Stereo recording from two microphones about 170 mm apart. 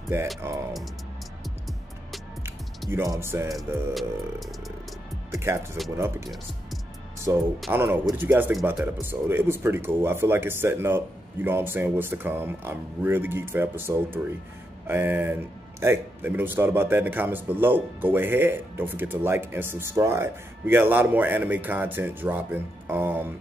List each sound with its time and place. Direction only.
0.1 s a man's voice: 15° right (ahead or behind)
2.9 s a man's voice: 15° right (ahead or behind)
3.5 s speech: centre (ahead or behind)
5.3 s music: 15° right (ahead or behind)
5.9 s a man's voice: 15° right (ahead or behind)